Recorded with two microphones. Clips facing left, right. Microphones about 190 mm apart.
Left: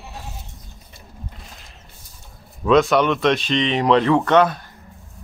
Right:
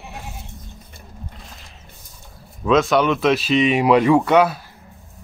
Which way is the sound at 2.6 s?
Centre (ahead or behind).